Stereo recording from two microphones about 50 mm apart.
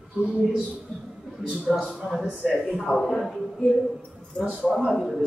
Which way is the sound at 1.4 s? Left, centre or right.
Centre.